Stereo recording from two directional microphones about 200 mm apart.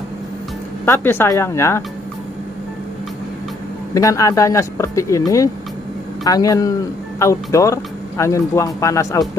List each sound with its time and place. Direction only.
0.8 s speech: 10° left (ahead or behind)
3.9 s speech: 15° left (ahead or behind)